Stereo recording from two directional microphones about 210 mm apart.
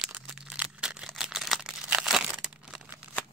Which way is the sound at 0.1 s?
5° right (ahead or behind).